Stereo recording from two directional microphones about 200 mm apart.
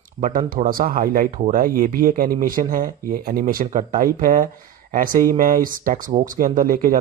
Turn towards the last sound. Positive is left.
turn(degrees=-45)  # may be behind; listen again after turning